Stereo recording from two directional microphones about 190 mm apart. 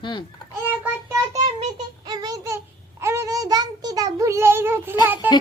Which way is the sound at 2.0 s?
20° right (ahead or behind).